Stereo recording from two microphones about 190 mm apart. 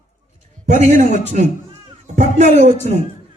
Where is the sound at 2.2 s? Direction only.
35° right (ahead or behind).